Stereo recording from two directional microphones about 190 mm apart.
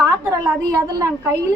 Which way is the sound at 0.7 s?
15° right (ahead or behind).